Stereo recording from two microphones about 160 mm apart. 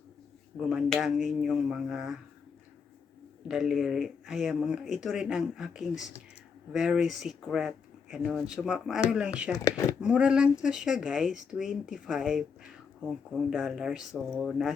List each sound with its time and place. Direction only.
0.5 s speech: 5° right (ahead or behind)
3.5 s speech: centre (ahead or behind)
9.6 s speech: 20° left (ahead or behind)
10.0 s speech: 5° right (ahead or behind)